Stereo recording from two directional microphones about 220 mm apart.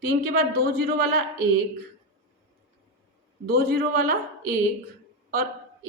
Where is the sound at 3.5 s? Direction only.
45° right (ahead or behind).